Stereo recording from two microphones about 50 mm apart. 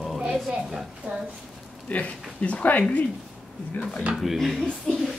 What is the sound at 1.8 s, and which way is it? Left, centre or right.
Speech, left.